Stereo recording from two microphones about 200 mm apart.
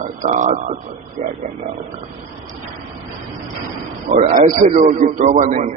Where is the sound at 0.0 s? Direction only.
40° right (ahead or behind).